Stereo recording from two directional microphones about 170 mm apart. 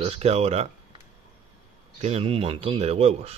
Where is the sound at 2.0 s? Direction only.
40° right (ahead or behind).